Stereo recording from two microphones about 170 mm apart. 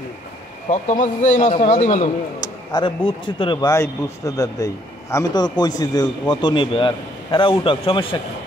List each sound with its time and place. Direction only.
0.7 s a man's voice: 45° left (ahead or behind)
2.4 s speech: 25° left (ahead or behind)
3.7 s speech: 20° left (ahead or behind)